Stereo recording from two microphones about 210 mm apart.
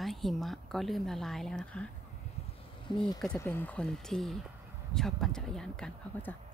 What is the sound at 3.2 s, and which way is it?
A woman's voice, 5° left (ahead or behind).